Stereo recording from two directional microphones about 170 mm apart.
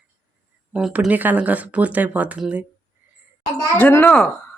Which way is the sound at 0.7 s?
5° right (ahead or behind).